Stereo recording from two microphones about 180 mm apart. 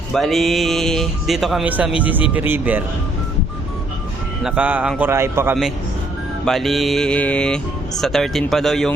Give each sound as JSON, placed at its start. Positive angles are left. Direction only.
{"t": 0.1, "sound": "a man's voice", "side_deg": 0}
{"t": 4.4, "sound": "a man's voice", "side_deg": -5}
{"t": 6.4, "sound": "speech", "side_deg": 0}